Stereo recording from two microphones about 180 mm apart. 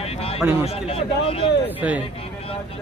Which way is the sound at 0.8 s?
30° left (ahead or behind).